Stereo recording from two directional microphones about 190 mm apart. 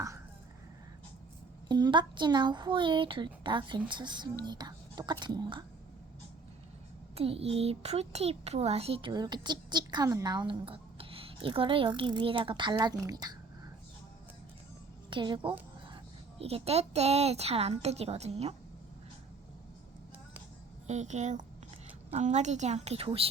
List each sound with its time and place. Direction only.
1.6 s a child's voice: 20° right (ahead or behind)
7.2 s a child's voice: 30° right (ahead or behind)
15.1 s a child's voice: 25° right (ahead or behind)
20.8 s a woman's voice: 35° right (ahead or behind)